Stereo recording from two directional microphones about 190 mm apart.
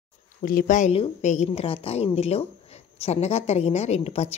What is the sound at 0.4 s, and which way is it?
A woman's voice, 50° left (ahead or behind).